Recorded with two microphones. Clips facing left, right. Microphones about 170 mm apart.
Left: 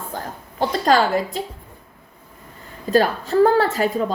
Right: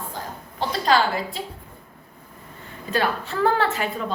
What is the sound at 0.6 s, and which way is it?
Speech, 45° left (ahead or behind).